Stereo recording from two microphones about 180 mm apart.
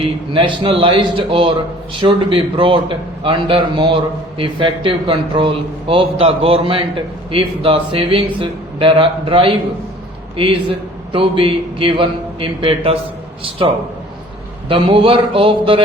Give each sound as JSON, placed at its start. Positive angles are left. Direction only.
{"t": 0.0, "sound": "speech", "side_deg": -30}